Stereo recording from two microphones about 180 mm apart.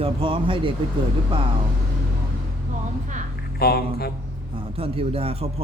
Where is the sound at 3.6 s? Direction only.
60° left (ahead or behind).